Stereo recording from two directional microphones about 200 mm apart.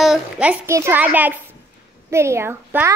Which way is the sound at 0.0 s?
5° right (ahead or behind).